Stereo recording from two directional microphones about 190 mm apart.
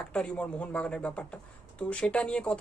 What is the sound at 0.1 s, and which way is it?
A man's voice, 5° left (ahead or behind).